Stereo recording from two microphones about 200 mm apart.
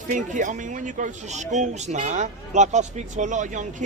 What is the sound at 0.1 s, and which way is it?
Speech, 40° right (ahead or behind).